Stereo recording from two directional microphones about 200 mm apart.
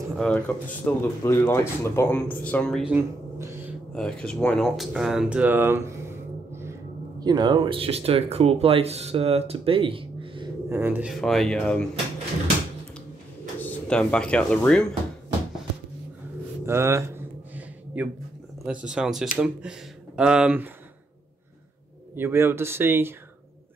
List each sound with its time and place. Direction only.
0.1 s speech: 5° left (ahead or behind)
3.9 s speech: 5° left (ahead or behind); by 10.5 s 25° right (ahead or behind)
10.7 s speech: 10° right (ahead or behind)
13.6 s speech: 5° left (ahead or behind)
16.6 s a sound: 15° right (ahead or behind)
18.7 s speech: 5° right (ahead or behind)
22.1 s speech: 10° right (ahead or behind)